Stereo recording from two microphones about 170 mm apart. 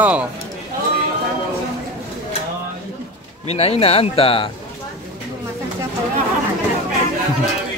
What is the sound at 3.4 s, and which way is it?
Speech, 35° left (ahead or behind).